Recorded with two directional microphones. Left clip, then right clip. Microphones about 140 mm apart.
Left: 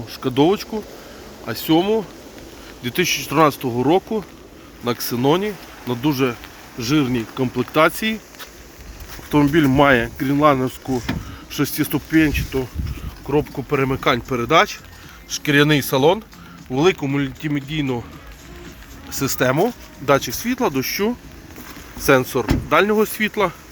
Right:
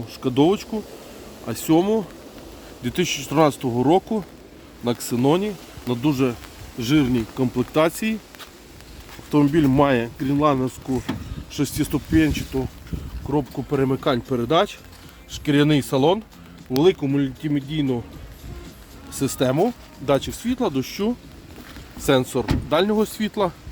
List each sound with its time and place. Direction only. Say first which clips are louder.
0.1 s speech: left 2 dB; 25° right (ahead or behind)
1.5 s speech: left 2 dB; 35° right (ahead or behind)
9.3 s speech: left 2 dB; 20° right (ahead or behind)
19.1 s speech: left 3 dB; 15° right (ahead or behind)